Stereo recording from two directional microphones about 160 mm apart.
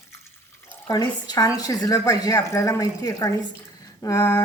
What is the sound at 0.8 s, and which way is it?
A woman's voice, 25° left (ahead or behind).